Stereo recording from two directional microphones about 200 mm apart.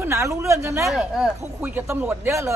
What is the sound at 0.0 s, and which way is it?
Speech, 15° right (ahead or behind).